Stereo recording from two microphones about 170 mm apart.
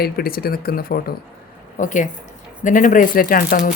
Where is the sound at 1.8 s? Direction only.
50° left (ahead or behind).